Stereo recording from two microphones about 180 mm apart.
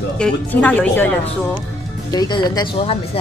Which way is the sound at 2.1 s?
25° left (ahead or behind).